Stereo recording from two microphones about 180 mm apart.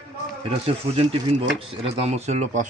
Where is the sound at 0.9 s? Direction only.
30° right (ahead or behind).